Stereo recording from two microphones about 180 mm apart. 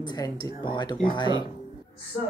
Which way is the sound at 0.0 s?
20° left (ahead or behind).